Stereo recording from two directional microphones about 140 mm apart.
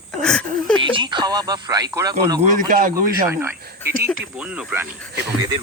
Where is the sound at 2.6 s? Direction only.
90° right.